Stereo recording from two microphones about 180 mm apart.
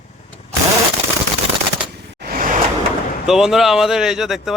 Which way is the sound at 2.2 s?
50° right (ahead or behind).